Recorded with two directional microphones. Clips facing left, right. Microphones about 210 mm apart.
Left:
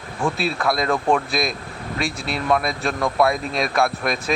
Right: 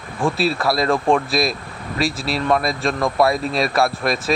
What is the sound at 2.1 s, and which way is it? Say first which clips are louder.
Speech: right 3 dB; 35° right (ahead or behind).